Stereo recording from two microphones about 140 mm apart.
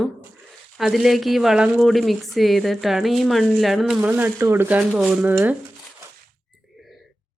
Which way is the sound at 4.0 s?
15° right (ahead or behind).